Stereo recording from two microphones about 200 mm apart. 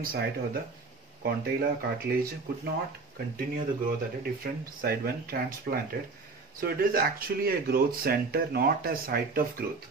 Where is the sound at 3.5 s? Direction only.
45° right (ahead or behind).